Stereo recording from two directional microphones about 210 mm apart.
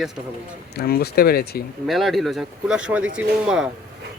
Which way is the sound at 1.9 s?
Centre (ahead or behind).